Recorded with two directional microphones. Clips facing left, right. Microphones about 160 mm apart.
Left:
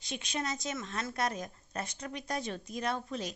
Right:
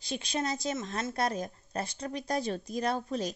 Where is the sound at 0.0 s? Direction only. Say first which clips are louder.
Right 4 dB; 35° right (ahead or behind).